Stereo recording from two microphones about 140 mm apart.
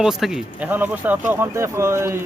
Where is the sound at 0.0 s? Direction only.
5° right (ahead or behind).